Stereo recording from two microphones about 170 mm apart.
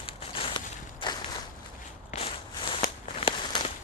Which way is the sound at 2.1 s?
35° left (ahead or behind).